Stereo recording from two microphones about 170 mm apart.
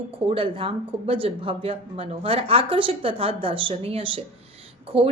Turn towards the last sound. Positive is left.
turn(degrees=-35)  # may be behind; listen again after turning